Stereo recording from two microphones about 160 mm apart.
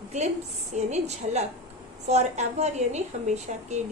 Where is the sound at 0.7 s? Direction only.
45° right (ahead or behind).